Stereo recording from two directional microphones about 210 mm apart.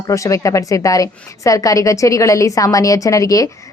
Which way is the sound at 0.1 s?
15° left (ahead or behind).